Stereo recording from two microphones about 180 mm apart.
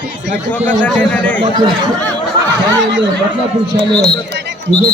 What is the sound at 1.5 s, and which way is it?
Speech, 25° right (ahead or behind).